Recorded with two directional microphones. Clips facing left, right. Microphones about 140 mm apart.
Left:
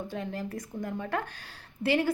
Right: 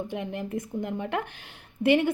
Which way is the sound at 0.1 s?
20° right (ahead or behind).